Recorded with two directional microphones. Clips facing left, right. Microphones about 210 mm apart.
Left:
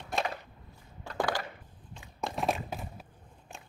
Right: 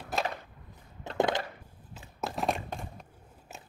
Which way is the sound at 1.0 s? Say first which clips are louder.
Right 4 dB; 20° right (ahead or behind).